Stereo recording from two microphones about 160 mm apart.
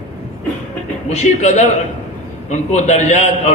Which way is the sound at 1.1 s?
45° left (ahead or behind).